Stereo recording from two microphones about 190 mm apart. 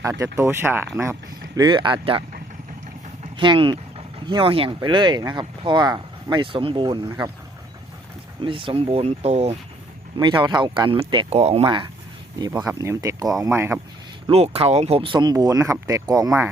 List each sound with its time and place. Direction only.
0.0 s speech: 15° right (ahead or behind)
1.5 s speech: 25° right (ahead or behind)
3.3 s speech: 25° right (ahead or behind)
8.4 s speech: 25° right (ahead or behind)
10.2 s speech: 25° right (ahead or behind)
14.3 s speech: 30° right (ahead or behind)